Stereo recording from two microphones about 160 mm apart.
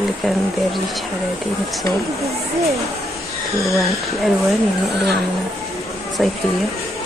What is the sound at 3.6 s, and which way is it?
Speech, centre (ahead or behind).